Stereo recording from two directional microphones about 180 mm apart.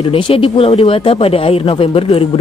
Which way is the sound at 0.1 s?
30° left (ahead or behind).